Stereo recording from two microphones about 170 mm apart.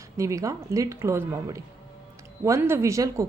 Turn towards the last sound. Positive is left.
turn(degrees=-20)  # may be behind; listen again after turning